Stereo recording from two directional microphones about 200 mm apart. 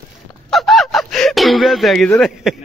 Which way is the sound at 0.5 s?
Centre (ahead or behind).